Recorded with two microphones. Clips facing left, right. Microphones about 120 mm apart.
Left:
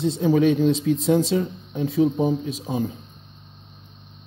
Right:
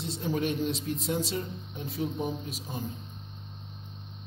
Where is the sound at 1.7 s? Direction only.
90° left.